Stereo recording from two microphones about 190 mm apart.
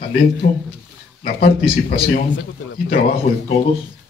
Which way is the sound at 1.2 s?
55° left (ahead or behind).